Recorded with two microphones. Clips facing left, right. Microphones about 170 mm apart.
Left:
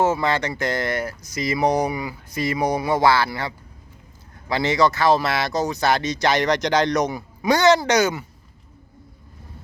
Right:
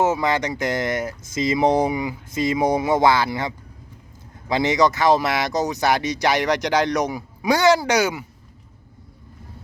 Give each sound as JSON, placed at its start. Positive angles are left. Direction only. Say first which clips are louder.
{"t": 0.0, "sound": "speech", "louder": "even", "side_deg": -15}